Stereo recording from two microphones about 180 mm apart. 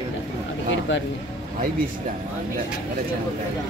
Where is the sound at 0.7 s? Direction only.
90° left.